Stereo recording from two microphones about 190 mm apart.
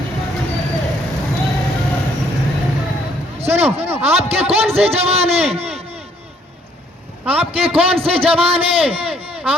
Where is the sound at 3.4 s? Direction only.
35° right (ahead or behind).